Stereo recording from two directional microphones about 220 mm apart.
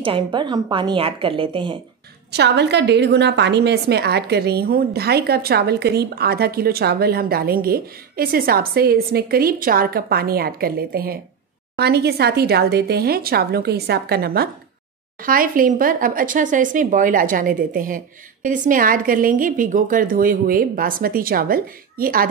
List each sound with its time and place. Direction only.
0.0 s a woman's voice: 20° right (ahead or behind)
2.3 s a woman's voice: 50° right (ahead or behind)